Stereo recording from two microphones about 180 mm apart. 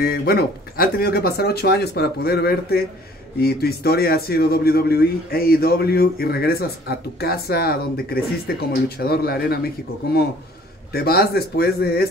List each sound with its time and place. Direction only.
0.0 s speech: 60° left (ahead or behind)
10.9 s speech: 55° left (ahead or behind)